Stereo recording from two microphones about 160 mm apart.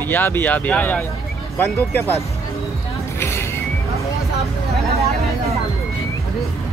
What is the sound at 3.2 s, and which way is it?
Music, 15° left (ahead or behind).